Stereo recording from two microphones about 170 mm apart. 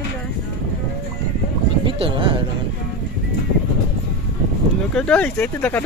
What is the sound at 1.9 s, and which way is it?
Speech, 30° right (ahead or behind).